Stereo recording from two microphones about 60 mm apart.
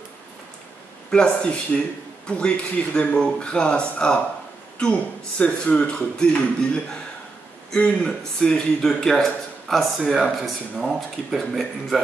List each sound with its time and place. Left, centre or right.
1.1 s a man's voice: centre
5.4 s a man's voice: centre